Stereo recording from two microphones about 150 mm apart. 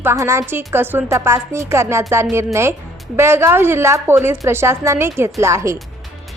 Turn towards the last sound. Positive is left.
turn(degrees=-20)  # may be behind; listen again after turning